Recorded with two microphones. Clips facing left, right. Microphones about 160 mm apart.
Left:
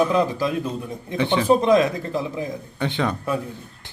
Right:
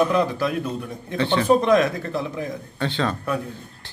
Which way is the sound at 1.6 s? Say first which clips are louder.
Left 1 dB; 25° left (ahead or behind).